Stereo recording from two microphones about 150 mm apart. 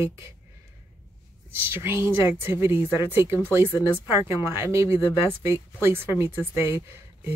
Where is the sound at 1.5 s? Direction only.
15° right (ahead or behind).